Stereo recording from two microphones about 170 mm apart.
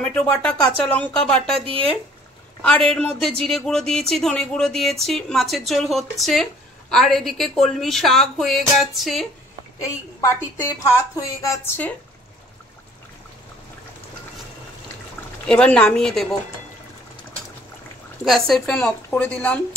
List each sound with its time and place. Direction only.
0.0 s a woman's voice: 5° left (ahead or behind)
2.6 s a woman's voice: 5° left (ahead or behind)
10.2 s a woman's voice: 20° left (ahead or behind)
15.4 s a woman's voice: 5° left (ahead or behind)
18.2 s a woman's voice: centre (ahead or behind)